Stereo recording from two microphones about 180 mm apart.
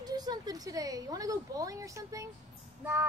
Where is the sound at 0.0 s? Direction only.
20° right (ahead or behind).